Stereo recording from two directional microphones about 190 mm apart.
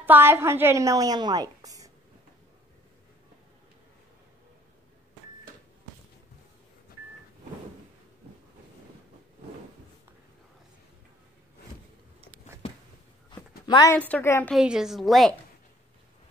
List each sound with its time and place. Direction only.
0.0 s a woman's voice: 10° right (ahead or behind)
13.3 s a sound: 20° left (ahead or behind)
13.9 s a woman's voice: 10° left (ahead or behind)
14.5 s a woman's voice: 5° right (ahead or behind)